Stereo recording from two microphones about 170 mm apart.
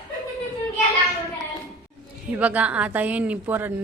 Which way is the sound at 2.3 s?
10° right (ahead or behind).